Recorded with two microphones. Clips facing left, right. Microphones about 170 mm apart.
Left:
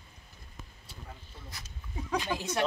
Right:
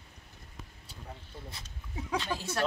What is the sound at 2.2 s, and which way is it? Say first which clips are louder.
Speech: left 2 dB; 15° left (ahead or behind).